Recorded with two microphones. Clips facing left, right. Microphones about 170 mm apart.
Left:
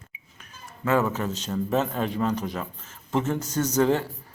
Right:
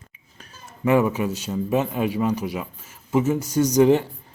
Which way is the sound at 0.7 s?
15° right (ahead or behind).